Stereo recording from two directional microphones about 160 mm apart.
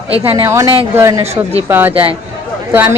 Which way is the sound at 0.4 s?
20° right (ahead or behind).